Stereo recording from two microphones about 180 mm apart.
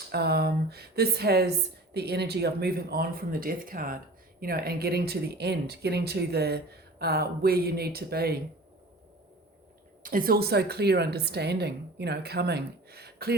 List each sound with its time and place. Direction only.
0.1 s speech: 65° right (ahead or behind)
10.0 s speech: 50° right (ahead or behind)